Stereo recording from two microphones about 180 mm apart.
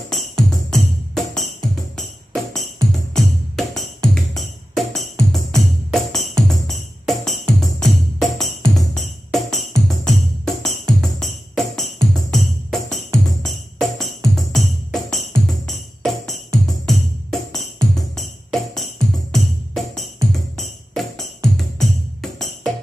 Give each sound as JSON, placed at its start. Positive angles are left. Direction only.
{"t": 0.1, "sound": "music", "side_deg": 0}